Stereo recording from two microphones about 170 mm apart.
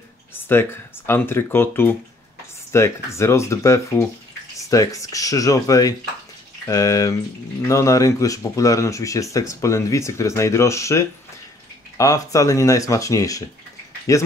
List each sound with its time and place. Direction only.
0.5 s speech: 15° left (ahead or behind)